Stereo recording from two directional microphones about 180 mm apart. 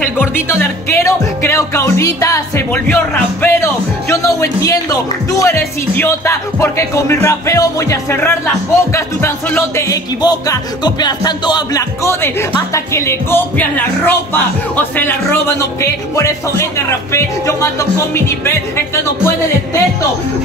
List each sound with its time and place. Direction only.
0.0 s music: 10° left (ahead or behind)